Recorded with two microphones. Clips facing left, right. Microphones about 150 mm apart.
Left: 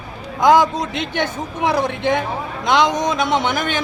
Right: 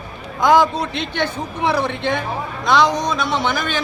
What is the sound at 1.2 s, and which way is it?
A man's voice, 15° left (ahead or behind).